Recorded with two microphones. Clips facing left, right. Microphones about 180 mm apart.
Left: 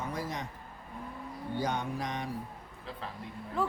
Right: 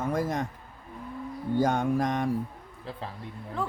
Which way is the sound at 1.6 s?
45° right (ahead or behind).